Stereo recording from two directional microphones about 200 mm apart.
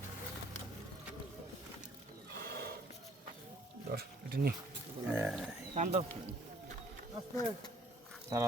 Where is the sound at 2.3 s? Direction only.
55° right (ahead or behind).